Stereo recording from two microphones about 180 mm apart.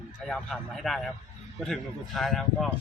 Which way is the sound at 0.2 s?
5° left (ahead or behind).